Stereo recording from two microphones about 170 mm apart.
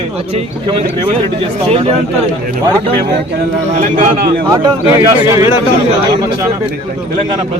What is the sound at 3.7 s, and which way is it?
Speech, 50° right (ahead or behind).